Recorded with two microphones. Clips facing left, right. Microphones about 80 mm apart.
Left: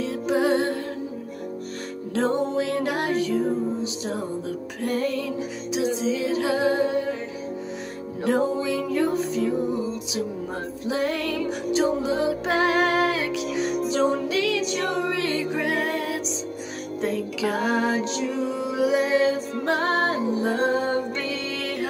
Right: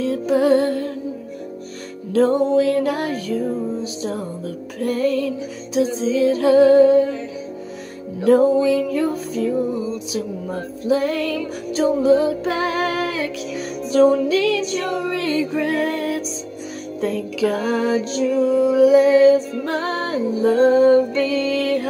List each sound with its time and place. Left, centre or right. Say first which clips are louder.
0.0 s music: right 5 dB; left
2.1 s music: right 8 dB; left
8.2 s music: right 9 dB; left